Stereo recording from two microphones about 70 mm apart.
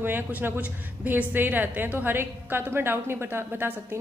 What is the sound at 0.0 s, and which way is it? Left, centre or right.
A woman's voice, right.